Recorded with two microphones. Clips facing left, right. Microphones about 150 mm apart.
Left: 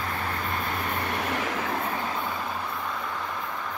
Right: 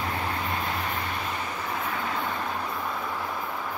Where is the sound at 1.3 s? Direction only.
90° left.